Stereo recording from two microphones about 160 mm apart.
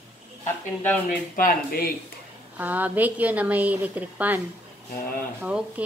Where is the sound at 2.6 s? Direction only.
10° right (ahead or behind).